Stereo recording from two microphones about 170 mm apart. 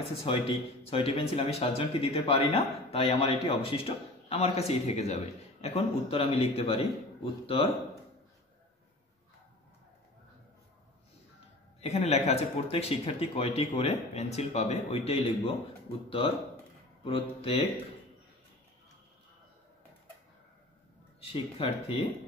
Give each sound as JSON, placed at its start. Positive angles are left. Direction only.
{"t": 0.3, "sound": "speech", "side_deg": 35}
{"t": 11.8, "sound": "speech", "side_deg": 40}
{"t": 17.0, "sound": "speech", "side_deg": 35}
{"t": 21.2, "sound": "speech", "side_deg": 35}